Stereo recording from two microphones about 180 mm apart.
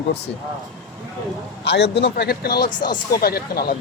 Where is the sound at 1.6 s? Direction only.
70° left (ahead or behind).